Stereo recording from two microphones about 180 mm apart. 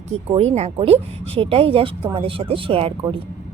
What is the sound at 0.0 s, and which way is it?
Speech, 35° right (ahead or behind).